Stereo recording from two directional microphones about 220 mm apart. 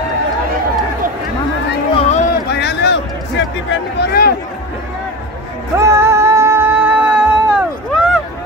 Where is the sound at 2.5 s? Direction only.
50° left (ahead or behind).